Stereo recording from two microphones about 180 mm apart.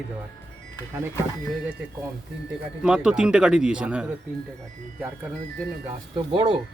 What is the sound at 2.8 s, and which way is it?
Speech, 5° right (ahead or behind).